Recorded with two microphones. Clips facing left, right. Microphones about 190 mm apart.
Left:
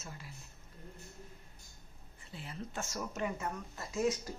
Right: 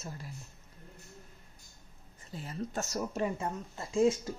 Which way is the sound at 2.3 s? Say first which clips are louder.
Right 6 dB; 40° right (ahead or behind).